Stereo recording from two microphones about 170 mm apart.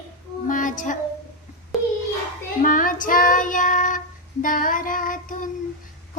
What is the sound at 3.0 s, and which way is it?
Female singing, 50° left (ahead or behind).